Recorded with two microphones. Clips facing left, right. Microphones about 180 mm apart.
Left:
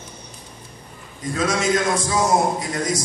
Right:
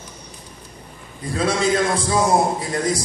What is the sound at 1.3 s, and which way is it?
Speech, 30° right (ahead or behind).